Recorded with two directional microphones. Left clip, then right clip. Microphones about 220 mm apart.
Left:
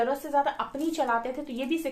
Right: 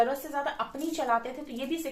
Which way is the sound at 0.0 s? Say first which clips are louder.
Left 2 dB; 40° left (ahead or behind).